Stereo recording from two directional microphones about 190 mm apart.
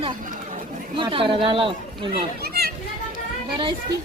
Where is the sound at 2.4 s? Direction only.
55° right (ahead or behind).